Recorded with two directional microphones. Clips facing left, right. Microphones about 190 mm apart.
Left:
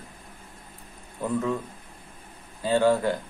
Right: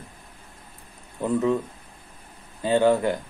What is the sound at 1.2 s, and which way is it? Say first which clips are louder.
Speech: right 4 dB; 20° right (ahead or behind).